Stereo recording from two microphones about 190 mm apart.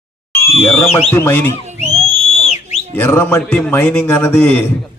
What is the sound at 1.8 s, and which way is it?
Owl, 35° right (ahead or behind).